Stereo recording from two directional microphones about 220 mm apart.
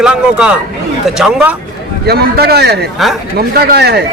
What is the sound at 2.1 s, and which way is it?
Speech, 45° right (ahead or behind).